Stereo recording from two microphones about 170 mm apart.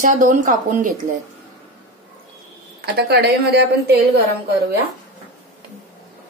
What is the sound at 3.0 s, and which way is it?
A woman's voice, 70° right (ahead or behind).